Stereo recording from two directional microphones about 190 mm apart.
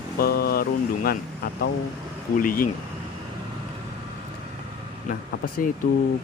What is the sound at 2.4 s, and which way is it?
Speech, 50° left (ahead or behind).